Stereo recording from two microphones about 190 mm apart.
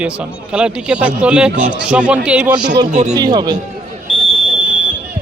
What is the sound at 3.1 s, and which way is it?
Speech, 20° right (ahead or behind).